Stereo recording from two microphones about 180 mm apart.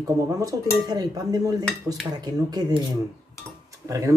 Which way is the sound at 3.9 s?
15° right (ahead or behind).